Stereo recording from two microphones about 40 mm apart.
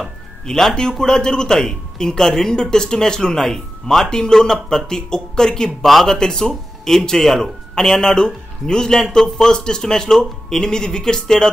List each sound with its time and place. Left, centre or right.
0.5 s speech: centre